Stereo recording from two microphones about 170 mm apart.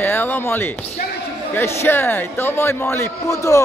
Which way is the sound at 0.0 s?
10° left (ahead or behind).